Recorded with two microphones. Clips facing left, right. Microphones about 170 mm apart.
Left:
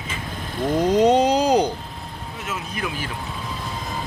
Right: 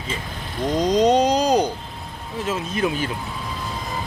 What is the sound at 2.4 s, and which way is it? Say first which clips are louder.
Speech: right 7 dB; 30° right (ahead or behind).